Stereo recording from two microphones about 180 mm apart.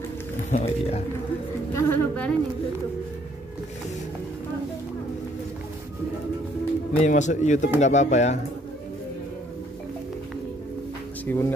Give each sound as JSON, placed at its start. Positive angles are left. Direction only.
{"t": 0.5, "sound": "speech", "side_deg": 35}
{"t": 1.7, "sound": "speech", "side_deg": 15}
{"t": 7.0, "sound": "speech", "side_deg": 40}
{"t": 11.2, "sound": "speech", "side_deg": 15}